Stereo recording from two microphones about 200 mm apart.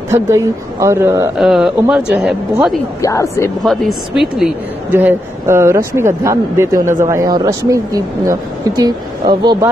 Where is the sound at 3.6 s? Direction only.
Centre (ahead or behind).